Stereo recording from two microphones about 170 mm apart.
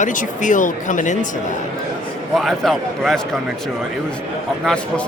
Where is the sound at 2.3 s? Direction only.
Centre (ahead or behind).